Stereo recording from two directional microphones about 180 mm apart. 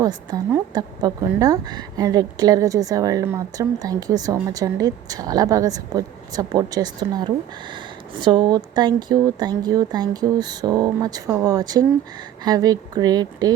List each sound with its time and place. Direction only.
0.0 s a woman's voice: 20° right (ahead or behind)